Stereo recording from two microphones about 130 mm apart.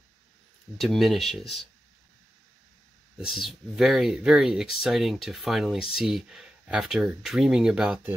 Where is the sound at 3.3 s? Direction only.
Centre (ahead or behind).